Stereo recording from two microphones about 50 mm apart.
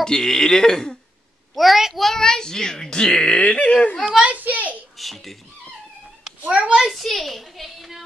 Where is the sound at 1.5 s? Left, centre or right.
Centre; by 3.9 s left.